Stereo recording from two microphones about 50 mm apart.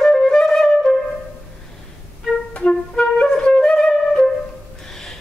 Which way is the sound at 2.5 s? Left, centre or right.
Centre.